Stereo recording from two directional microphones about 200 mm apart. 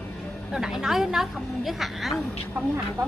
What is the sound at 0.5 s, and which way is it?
A woman's voice, centre (ahead or behind).